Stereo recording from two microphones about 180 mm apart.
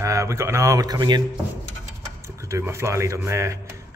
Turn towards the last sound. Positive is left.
turn(degrees=-15)  # may be behind; listen again after turning